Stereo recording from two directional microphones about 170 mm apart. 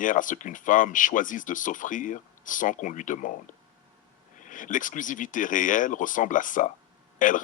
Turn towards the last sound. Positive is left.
turn(degrees=50)  # may be behind; listen again after turning